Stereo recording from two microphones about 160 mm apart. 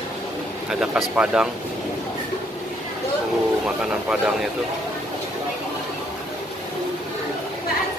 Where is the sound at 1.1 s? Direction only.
5° right (ahead or behind).